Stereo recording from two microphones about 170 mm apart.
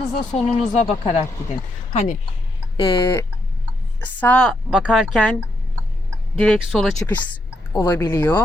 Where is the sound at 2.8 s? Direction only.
15° left (ahead or behind).